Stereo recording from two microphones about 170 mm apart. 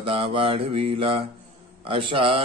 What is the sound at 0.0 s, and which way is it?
Mantra, 35° right (ahead or behind).